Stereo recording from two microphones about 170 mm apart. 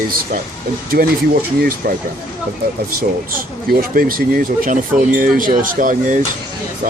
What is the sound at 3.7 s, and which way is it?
Speech, 60° right (ahead or behind).